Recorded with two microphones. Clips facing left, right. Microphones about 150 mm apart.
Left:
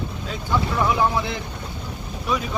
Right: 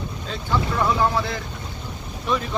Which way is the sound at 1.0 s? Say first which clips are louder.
Even; 15° left (ahead or behind).